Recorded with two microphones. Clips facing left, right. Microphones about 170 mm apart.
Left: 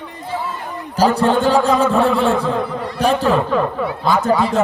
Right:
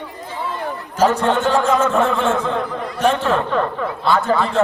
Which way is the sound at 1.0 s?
35° left (ahead or behind).